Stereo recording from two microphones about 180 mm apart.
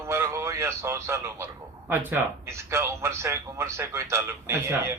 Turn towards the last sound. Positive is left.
turn(degrees=-15)  # may be behind; listen again after turning